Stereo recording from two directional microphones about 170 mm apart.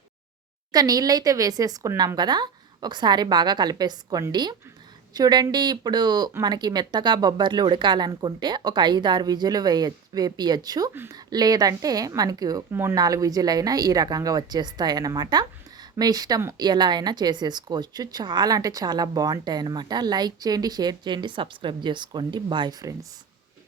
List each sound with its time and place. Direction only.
0.7 s speech: 20° right (ahead or behind)